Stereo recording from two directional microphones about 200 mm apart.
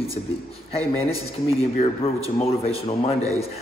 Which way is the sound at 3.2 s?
15° right (ahead or behind).